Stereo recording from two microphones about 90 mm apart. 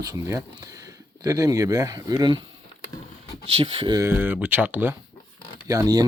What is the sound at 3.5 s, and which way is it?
Speech, 90° right.